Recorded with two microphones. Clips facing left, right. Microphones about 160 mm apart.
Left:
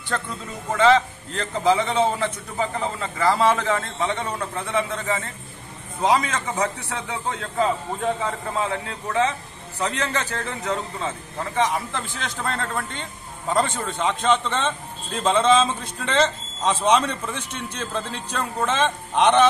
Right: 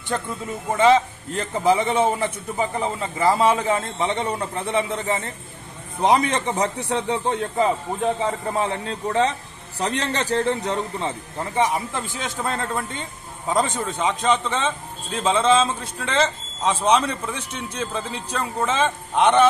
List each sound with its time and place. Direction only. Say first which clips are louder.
0.1 s a man's voice: right 2 dB; 15° right (ahead or behind)
11.5 s a man's voice: right 1 dB; 15° right (ahead or behind)